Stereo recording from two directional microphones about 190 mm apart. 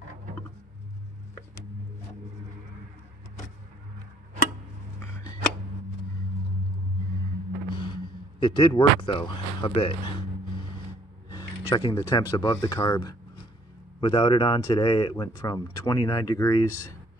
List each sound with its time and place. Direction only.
7.7 s speech: 25° left (ahead or behind)
11.2 s speech: 20° left (ahead or behind)